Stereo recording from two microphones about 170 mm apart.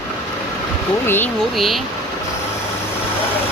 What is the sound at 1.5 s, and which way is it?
Speech, centre (ahead or behind).